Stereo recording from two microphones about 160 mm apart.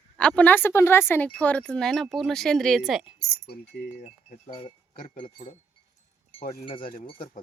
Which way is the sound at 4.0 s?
45° left (ahead or behind).